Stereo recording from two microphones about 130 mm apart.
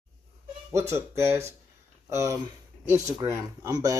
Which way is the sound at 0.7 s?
20° right (ahead or behind).